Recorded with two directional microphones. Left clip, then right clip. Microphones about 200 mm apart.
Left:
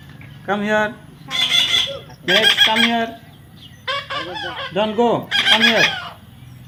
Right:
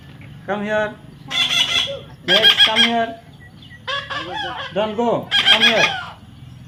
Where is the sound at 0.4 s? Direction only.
35° left (ahead or behind).